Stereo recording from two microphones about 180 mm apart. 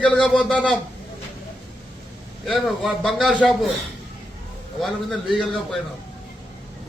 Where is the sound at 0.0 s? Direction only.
5° left (ahead or behind).